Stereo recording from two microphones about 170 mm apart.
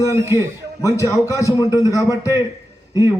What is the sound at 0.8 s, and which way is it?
A man's voice, 20° left (ahead or behind).